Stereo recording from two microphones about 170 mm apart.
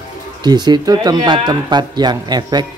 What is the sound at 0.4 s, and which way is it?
Speech, 25° right (ahead or behind).